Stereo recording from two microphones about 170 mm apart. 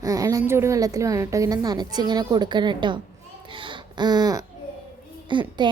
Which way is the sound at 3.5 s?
30° right (ahead or behind).